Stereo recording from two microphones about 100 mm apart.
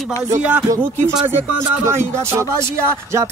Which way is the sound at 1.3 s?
25° right (ahead or behind).